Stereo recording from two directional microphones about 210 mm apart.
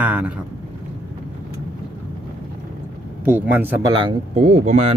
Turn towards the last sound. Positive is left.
turn(degrees=-30)  # may be behind; listen again after turning